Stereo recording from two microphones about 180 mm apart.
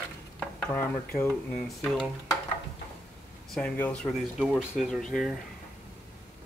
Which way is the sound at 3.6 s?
10° left (ahead or behind).